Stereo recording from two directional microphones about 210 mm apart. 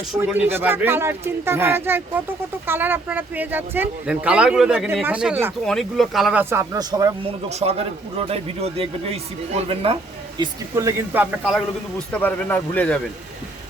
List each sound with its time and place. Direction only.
0.3 s speech: 10° right (ahead or behind)
6.4 s speech: 10° right (ahead or behind)
7.5 s speech: 30° right (ahead or behind); by 13.0 s 5° left (ahead or behind)